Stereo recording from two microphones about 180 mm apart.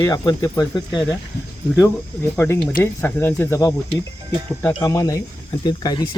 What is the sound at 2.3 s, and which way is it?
Speech, 15° left (ahead or behind).